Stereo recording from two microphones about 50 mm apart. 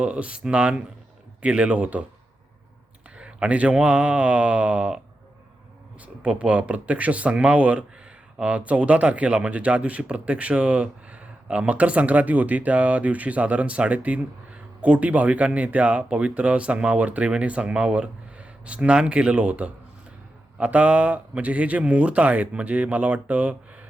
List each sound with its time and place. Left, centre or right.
0.0 s speech: right
3.2 s speech: right
6.2 s speech: right